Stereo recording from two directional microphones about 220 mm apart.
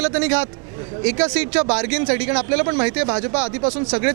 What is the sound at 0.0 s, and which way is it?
Speech, 10° right (ahead or behind).